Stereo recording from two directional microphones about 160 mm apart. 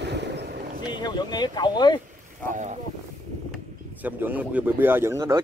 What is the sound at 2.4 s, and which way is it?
Speech, 50° right (ahead or behind).